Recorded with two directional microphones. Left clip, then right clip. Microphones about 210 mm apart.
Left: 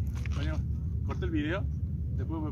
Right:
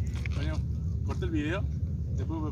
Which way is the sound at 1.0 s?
5° left (ahead or behind).